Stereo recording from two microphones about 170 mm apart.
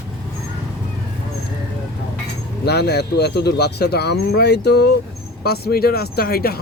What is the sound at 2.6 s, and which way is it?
A man's voice, 75° left (ahead or behind).